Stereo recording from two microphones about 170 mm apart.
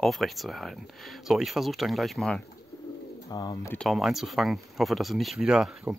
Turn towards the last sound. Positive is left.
turn(degrees=-5)  # may be behind; listen again after turning